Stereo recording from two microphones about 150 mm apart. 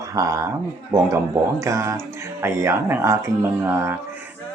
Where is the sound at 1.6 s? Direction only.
20° right (ahead or behind).